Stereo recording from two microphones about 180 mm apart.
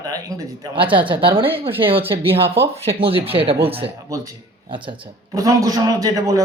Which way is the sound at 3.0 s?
30° right (ahead or behind).